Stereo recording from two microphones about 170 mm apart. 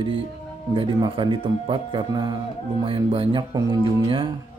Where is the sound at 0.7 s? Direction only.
30° right (ahead or behind).